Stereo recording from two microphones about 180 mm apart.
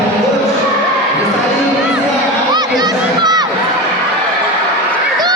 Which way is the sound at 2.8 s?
20° right (ahead or behind).